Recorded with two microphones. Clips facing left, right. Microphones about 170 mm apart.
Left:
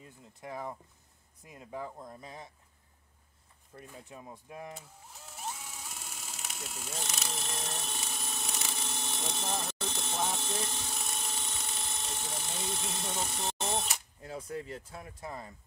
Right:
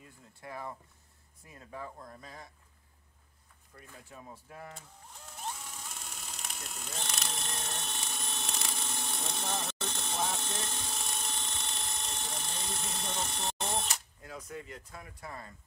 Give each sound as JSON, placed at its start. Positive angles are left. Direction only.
{"t": 0.2, "sound": "speech", "side_deg": 20}
{"t": 3.7, "sound": "vehicle", "side_deg": 15}
{"t": 14.2, "sound": "speech", "side_deg": 30}